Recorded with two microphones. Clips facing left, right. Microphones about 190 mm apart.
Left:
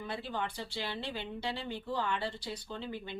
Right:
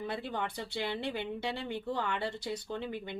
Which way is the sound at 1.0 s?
60° right (ahead or behind).